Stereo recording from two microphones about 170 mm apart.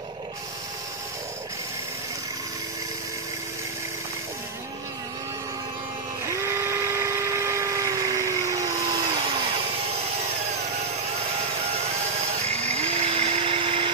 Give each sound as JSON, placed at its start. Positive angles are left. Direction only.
{"t": 6.2, "sound": "dental drill", "side_deg": -15}
{"t": 12.6, "sound": "chainsaw", "side_deg": -40}